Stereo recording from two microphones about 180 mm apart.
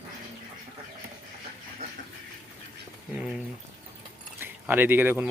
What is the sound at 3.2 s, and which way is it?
Speech, 5° right (ahead or behind).